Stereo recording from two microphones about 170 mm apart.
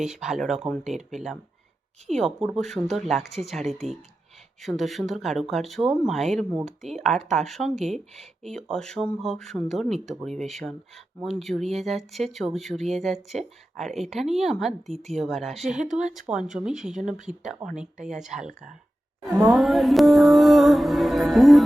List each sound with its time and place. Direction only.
0.0 s speech: 5° right (ahead or behind)
19.3 s speech: 20° right (ahead or behind)
19.5 s speech: centre (ahead or behind)